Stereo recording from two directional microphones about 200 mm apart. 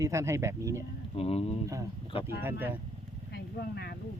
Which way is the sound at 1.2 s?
30° left (ahead or behind).